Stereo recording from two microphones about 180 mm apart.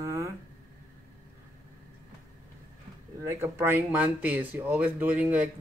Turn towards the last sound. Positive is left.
turn(degrees=-10)  # may be behind; listen again after turning